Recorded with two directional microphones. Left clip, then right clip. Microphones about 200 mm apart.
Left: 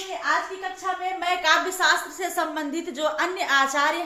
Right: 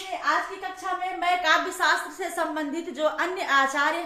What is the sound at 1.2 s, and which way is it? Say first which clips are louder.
A woman's voice: left 1 dB; 15° left (ahead or behind).